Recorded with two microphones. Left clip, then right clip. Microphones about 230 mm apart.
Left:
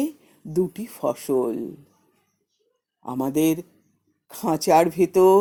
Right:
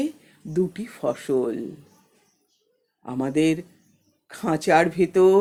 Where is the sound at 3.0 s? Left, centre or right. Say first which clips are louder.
Even; left.